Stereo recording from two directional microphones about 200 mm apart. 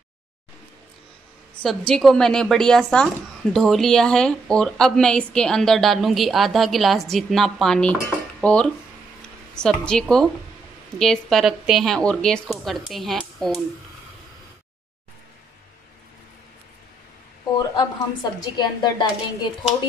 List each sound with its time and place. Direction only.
1.6 s speech: centre (ahead or behind)
17.6 s a woman's voice: 20° left (ahead or behind)